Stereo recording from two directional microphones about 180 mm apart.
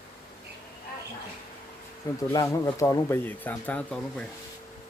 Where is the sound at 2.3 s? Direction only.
15° left (ahead or behind).